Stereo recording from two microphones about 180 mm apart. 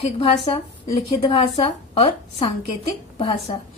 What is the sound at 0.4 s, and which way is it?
Speech, 30° left (ahead or behind).